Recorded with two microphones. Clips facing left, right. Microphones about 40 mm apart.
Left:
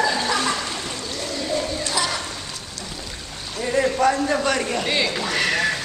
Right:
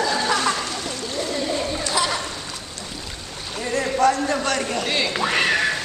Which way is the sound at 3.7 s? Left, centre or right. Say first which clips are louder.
Even; centre.